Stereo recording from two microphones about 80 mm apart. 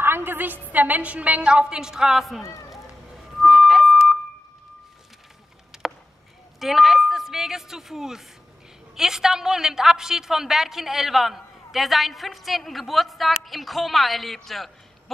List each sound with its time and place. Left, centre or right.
0.0 s a woman's voice: right; by 2.4 s centre
3.4 s music: centre
5.7 s a sound: centre
6.6 s a woman's voice: centre